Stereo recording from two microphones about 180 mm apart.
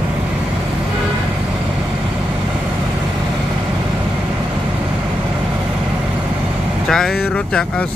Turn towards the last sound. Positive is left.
turn(degrees=5)  # may be behind; listen again after turning